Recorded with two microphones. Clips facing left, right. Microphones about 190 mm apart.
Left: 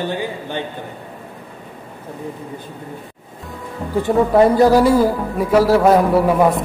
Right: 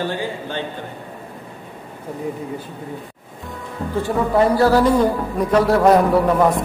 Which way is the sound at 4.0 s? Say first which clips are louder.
Left 4 dB; 20° left (ahead or behind).